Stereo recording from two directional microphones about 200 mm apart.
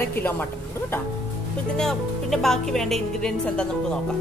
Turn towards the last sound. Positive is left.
turn(degrees=5)  # may be behind; listen again after turning